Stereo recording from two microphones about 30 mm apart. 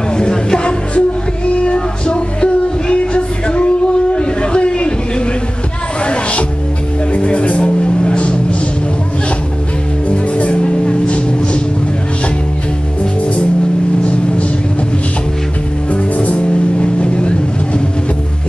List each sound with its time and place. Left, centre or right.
0.2 s music: left
0.9 s music: left
7.1 s music: left
10.0 s music: left
15.9 s music: left